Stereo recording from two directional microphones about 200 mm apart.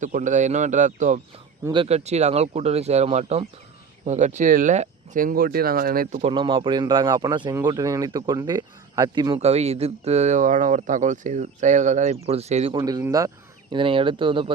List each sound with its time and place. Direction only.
0.0 s speech: 40° right (ahead or behind)
1.6 s speech: 25° right (ahead or behind)
6.3 s speech: 25° right (ahead or behind)
12.8 s speech: 15° right (ahead or behind)